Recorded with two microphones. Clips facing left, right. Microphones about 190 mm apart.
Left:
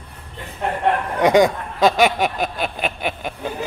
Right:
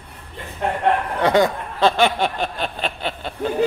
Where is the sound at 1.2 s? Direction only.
15° left (ahead or behind).